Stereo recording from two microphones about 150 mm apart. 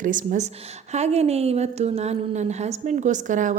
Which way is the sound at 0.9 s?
45° right (ahead or behind).